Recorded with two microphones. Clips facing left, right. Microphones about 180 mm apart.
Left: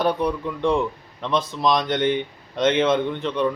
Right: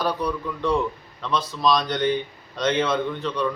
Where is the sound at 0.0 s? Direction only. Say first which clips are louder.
Left 3 dB; 25° left (ahead or behind).